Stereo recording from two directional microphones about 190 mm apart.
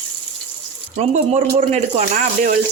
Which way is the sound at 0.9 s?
35° right (ahead or behind).